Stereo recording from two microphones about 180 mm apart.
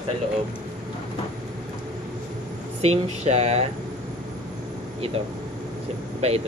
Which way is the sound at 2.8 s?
35° right (ahead or behind).